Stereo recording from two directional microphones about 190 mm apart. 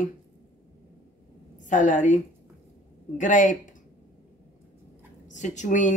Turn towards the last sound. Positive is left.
turn(degrees=40)  # may be behind; listen again after turning